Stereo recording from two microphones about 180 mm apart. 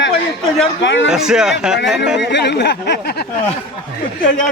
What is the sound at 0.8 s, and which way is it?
Speech, 90° left.